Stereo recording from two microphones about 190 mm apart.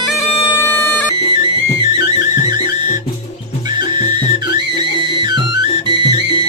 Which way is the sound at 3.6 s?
20° right (ahead or behind).